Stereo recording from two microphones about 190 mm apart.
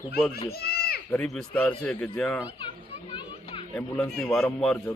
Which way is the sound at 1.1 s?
5° left (ahead or behind).